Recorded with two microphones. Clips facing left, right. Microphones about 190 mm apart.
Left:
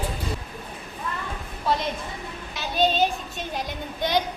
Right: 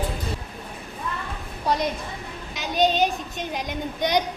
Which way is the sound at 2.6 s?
15° right (ahead or behind).